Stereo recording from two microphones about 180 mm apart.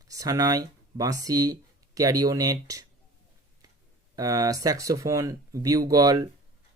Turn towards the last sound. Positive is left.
turn(degrees=-20)  # may be behind; listen again after turning